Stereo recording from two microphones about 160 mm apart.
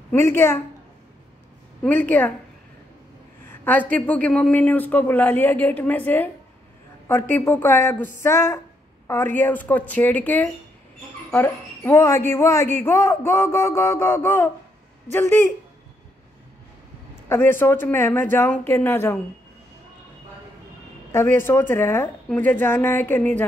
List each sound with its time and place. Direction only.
0.1 s a woman's voice: 15° left (ahead or behind)
1.8 s a woman's voice: 10° left (ahead or behind)
3.4 s a woman's voice: 10° left (ahead or behind)
7.3 s a woman's voice: 10° left (ahead or behind)
17.3 s a woman's voice: 15° left (ahead or behind)
21.1 s a woman's voice: 15° left (ahead or behind)